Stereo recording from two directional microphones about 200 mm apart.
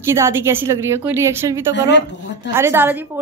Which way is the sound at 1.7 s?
60° left (ahead or behind).